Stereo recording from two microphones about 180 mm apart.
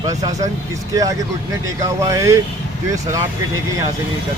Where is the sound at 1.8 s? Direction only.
20° right (ahead or behind).